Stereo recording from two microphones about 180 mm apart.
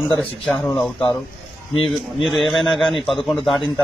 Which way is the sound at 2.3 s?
Centre (ahead or behind).